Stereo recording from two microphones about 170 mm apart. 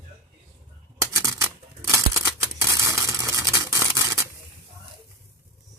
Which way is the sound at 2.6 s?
20° right (ahead or behind).